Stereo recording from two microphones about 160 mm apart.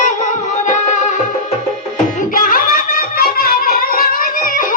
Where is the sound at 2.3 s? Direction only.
60° left (ahead or behind).